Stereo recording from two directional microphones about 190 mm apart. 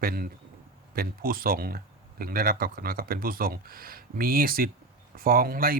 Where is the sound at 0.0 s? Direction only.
50° right (ahead or behind).